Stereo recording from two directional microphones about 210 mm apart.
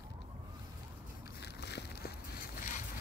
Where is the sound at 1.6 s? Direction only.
50° left (ahead or behind).